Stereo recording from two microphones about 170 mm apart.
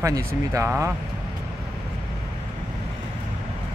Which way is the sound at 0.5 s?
15° right (ahead or behind).